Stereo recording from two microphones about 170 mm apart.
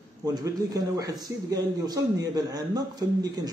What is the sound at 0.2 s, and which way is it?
A man's voice, 20° right (ahead or behind).